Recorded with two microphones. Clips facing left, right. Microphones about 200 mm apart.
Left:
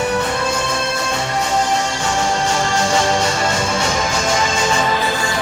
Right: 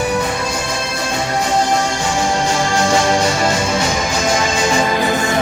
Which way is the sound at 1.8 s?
10° right (ahead or behind).